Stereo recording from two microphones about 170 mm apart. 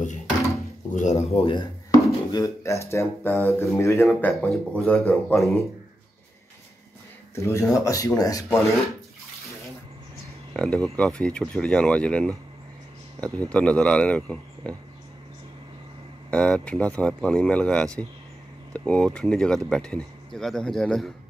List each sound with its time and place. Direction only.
0.9 s speech: 45° left (ahead or behind); by 5.4 s 10° left (ahead or behind)
7.3 s speech: 15° left (ahead or behind)
10.5 s speech: 5° left (ahead or behind)
13.5 s speech: 5° left (ahead or behind)
16.3 s speech: 5° left (ahead or behind)